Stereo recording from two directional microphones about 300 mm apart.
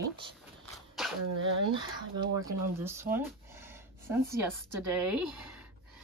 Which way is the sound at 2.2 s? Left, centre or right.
Centre.